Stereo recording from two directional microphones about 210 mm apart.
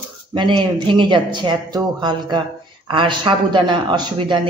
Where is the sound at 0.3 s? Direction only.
20° right (ahead or behind).